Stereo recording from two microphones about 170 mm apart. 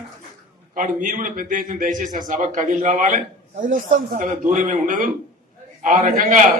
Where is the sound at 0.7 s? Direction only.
50° right (ahead or behind).